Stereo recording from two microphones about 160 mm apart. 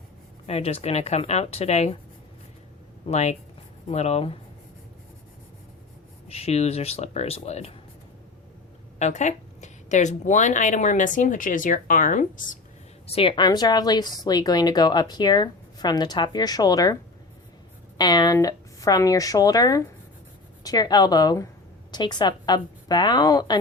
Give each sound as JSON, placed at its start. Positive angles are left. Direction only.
{"t": 0.4, "sound": "speech", "side_deg": 40}
{"t": 3.1, "sound": "a woman's voice", "side_deg": 45}
{"t": 6.2, "sound": "speech", "side_deg": 40}
{"t": 9.0, "sound": "a woman's voice", "side_deg": 45}
{"t": 13.1, "sound": "a woman's voice", "side_deg": 35}